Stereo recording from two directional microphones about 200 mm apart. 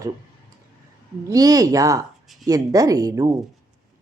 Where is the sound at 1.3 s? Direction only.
15° right (ahead or behind).